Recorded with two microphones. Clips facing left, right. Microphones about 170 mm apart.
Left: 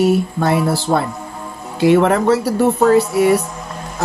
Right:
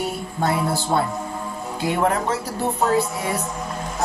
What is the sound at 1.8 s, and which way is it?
Speech, 80° left.